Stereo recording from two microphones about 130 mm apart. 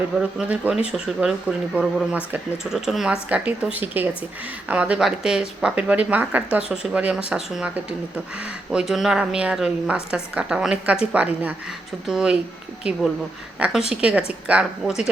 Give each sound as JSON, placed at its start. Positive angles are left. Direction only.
{"t": 0.2, "sound": "speech", "side_deg": -5}
{"t": 13.6, "sound": "speech", "side_deg": -10}